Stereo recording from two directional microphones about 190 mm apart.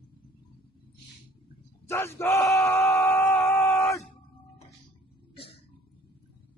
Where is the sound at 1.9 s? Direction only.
15° left (ahead or behind).